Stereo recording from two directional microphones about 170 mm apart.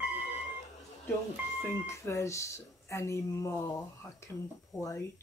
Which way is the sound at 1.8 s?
15° left (ahead or behind).